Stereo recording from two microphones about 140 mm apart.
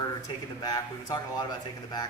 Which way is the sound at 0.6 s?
30° left (ahead or behind).